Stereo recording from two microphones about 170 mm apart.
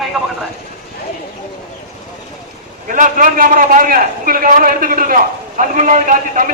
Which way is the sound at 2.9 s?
50° right (ahead or behind).